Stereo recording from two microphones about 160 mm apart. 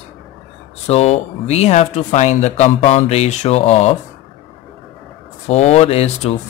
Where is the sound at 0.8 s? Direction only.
40° left (ahead or behind).